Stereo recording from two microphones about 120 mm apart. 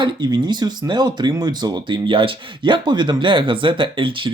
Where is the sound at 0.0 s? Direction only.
40° right (ahead or behind).